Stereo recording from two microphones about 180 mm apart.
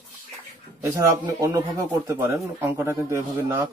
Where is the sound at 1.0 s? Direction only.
20° right (ahead or behind).